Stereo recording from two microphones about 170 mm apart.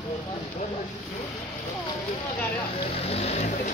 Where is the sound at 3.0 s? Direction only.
35° left (ahead or behind).